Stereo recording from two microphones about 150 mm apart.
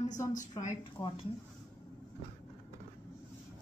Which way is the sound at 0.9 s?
35° left (ahead or behind).